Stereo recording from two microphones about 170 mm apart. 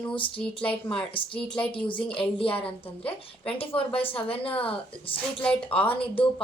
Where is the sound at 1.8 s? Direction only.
30° left (ahead or behind).